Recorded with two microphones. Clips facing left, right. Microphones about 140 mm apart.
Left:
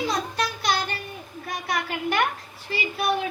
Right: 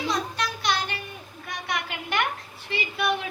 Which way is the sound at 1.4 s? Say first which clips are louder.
Left 3 dB; 40° left (ahead or behind).